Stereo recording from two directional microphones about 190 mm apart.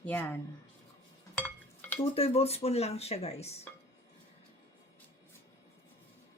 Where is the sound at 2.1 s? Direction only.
30° left (ahead or behind).